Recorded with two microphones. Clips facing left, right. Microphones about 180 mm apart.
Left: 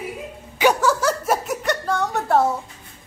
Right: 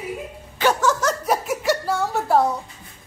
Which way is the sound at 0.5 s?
10° left (ahead or behind).